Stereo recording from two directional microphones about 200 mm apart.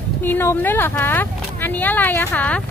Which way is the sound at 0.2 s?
10° left (ahead or behind).